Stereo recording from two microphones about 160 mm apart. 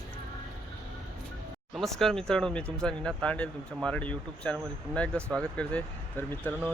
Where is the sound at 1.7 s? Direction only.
Centre (ahead or behind).